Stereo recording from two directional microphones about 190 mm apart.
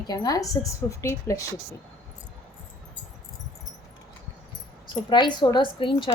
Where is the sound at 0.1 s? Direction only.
20° left (ahead or behind).